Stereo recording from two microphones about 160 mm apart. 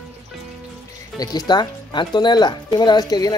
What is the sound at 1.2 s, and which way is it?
Speech, 25° left (ahead or behind).